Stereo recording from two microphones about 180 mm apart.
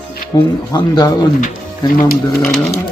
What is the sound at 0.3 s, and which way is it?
Speech, 20° left (ahead or behind).